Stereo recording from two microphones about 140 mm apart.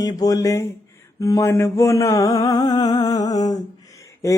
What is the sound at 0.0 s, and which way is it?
Mantra, 25° left (ahead or behind).